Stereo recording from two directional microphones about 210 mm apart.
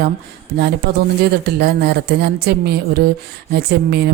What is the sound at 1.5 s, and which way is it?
A woman's voice, 50° right (ahead or behind).